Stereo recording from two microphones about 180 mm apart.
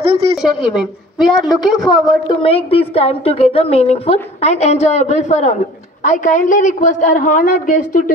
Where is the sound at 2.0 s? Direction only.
30° left (ahead or behind).